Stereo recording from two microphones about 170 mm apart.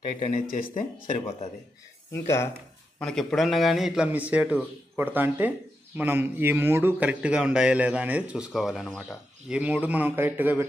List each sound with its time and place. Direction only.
0.3 s speech: 55° left (ahead or behind)
2.1 s speech: 15° left (ahead or behind)
3.0 s a man's voice: 5° left (ahead or behind); by 10.6 s 10° right (ahead or behind)